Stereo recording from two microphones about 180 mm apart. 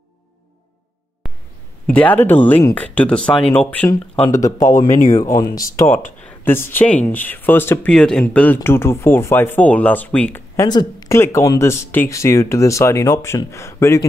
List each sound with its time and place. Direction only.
1.9 s speech: 10° left (ahead or behind)
4.9 s speech: 45° left (ahead or behind)
5.2 s speech: 20° left (ahead or behind)